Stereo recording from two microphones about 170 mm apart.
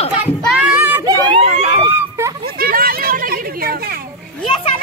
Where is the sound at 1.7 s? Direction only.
20° right (ahead or behind).